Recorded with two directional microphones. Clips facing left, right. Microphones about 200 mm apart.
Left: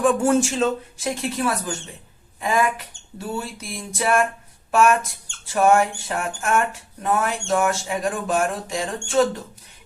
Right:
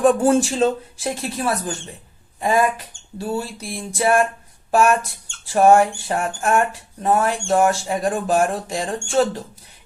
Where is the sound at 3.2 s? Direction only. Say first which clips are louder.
Right 4 dB; 35° right (ahead or behind).